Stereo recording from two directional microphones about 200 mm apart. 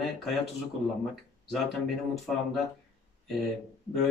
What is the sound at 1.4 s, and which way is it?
Speech, centre (ahead or behind).